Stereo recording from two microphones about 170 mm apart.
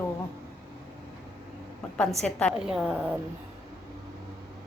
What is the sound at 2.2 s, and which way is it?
Speech, 5° left (ahead or behind).